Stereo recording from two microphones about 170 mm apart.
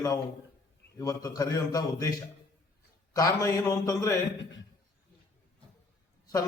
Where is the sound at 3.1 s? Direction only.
20° left (ahead or behind).